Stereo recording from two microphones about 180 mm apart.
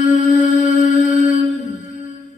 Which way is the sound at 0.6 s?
45° left (ahead or behind).